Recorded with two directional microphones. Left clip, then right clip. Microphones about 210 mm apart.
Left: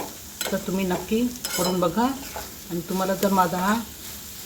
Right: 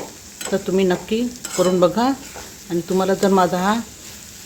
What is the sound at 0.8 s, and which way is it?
Speech, 50° right (ahead or behind).